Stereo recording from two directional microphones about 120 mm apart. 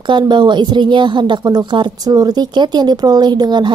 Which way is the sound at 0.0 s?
40° right (ahead or behind).